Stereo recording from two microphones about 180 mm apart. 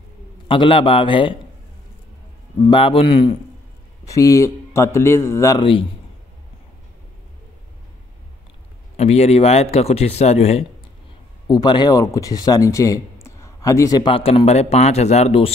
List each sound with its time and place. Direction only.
0.5 s speech: 30° left (ahead or behind)
2.6 s speech: 30° left (ahead or behind)
4.0 s speech: 20° left (ahead or behind)
8.9 s speech: 35° left (ahead or behind)
11.4 s speech: 20° left (ahead or behind)